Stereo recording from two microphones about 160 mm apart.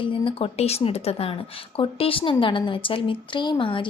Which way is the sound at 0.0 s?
35° left (ahead or behind).